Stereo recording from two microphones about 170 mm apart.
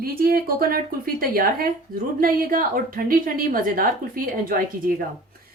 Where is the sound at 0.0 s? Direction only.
60° right (ahead or behind).